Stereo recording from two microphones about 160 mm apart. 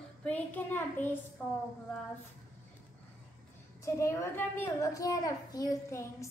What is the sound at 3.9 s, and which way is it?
A woman's voice, 20° left (ahead or behind).